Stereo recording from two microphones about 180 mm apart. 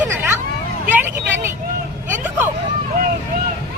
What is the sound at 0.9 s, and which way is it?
Vehicle, 10° right (ahead or behind).